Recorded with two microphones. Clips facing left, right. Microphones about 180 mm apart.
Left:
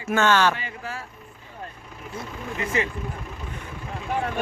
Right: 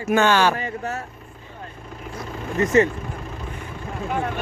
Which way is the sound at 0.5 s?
40° right (ahead or behind).